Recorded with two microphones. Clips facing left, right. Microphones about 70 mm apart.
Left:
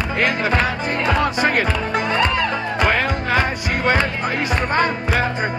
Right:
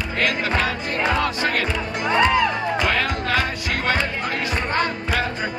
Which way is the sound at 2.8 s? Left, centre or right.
Left.